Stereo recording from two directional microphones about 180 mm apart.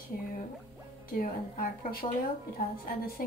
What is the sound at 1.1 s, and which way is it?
Speech, 55° left (ahead or behind).